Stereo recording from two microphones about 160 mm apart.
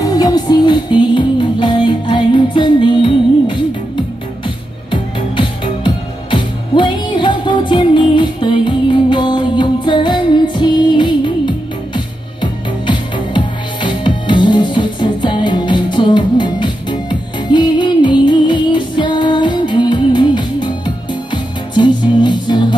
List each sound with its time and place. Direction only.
0.0 s music: 25° left (ahead or behind)